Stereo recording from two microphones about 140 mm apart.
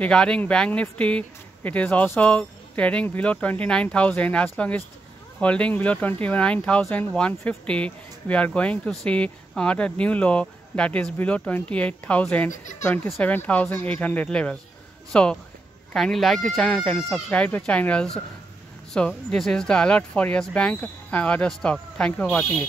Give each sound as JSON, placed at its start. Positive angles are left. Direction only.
{"t": 0.0, "sound": "speech", "side_deg": 5}
{"t": 12.4, "sound": "speech", "side_deg": 60}
{"t": 13.2, "sound": "speech", "side_deg": 10}